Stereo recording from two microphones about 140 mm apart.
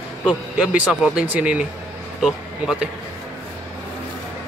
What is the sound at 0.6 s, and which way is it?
Speech, 5° right (ahead or behind).